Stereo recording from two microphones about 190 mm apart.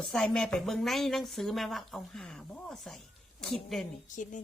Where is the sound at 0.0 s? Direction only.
5° left (ahead or behind).